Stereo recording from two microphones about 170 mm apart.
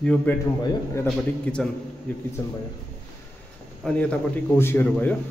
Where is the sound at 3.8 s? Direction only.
5° left (ahead or behind).